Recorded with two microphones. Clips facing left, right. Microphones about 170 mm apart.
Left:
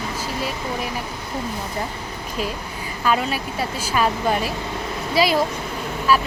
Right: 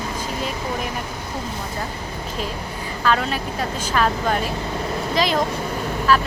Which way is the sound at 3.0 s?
10° left (ahead or behind).